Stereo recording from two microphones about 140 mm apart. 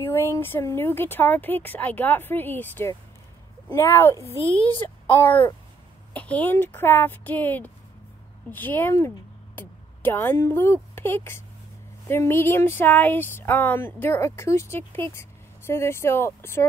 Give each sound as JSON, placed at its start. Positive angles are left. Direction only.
{"t": 0.0, "sound": "a child's voice", "side_deg": 15}